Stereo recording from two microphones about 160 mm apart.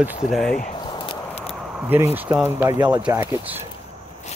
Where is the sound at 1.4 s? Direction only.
5° right (ahead or behind).